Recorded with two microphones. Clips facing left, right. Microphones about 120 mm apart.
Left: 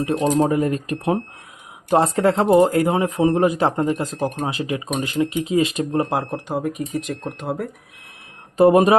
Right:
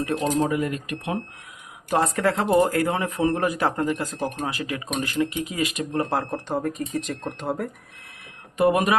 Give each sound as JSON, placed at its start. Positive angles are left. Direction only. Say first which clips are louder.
{"t": 0.0, "sound": "speech", "louder": "left 5 dB", "side_deg": 25}
{"t": 6.1, "sound": "speech", "louder": "left 2 dB", "side_deg": 10}
{"t": 8.5, "sound": "speech", "louder": "left 7 dB", "side_deg": 30}